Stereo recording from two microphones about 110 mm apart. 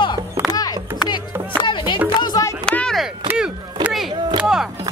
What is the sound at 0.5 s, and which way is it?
Music, 35° left (ahead or behind).